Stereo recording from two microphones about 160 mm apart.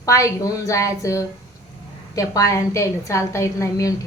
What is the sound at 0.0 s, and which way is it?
A woman's voice, 20° left (ahead or behind).